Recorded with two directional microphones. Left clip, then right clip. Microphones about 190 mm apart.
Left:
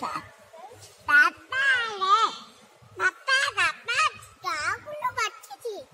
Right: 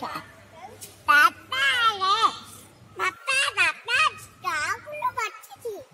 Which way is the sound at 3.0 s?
50° right (ahead or behind).